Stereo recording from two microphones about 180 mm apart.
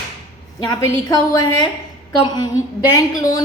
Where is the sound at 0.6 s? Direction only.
20° left (ahead or behind).